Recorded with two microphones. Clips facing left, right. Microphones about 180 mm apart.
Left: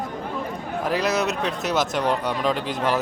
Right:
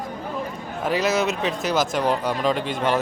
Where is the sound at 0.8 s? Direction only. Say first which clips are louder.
Right 2 dB; centre (ahead or behind).